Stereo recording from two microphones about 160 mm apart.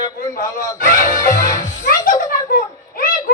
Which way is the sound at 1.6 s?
60° left (ahead or behind).